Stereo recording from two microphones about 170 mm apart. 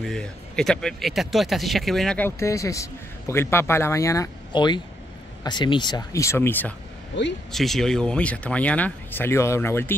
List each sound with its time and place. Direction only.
0.0 s speech: 5° left (ahead or behind)
7.5 s speech: centre (ahead or behind)